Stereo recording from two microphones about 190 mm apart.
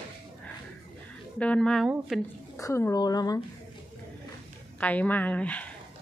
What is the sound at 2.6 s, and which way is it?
Speech, 15° left (ahead or behind).